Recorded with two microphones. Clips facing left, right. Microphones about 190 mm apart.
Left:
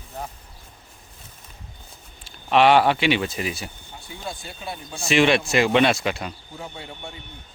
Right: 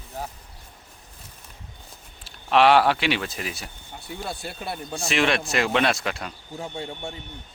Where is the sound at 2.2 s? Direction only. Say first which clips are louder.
Left 1 dB; centre (ahead or behind).